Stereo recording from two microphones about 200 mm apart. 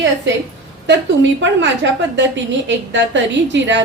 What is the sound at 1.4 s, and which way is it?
A woman's voice, 65° right (ahead or behind).